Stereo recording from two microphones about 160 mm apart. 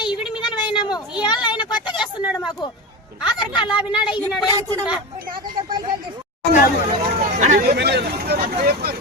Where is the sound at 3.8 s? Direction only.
30° left (ahead or behind).